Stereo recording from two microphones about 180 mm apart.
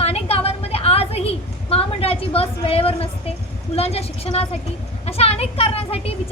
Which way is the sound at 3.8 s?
35° left (ahead or behind).